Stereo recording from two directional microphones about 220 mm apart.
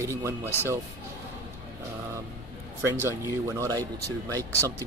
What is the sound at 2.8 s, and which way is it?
Speech, 10° right (ahead or behind).